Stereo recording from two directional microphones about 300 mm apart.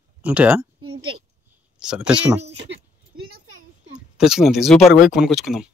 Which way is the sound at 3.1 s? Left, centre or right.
Right.